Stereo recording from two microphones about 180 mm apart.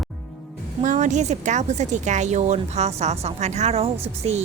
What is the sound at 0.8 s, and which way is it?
A woman's voice, 45° right (ahead or behind).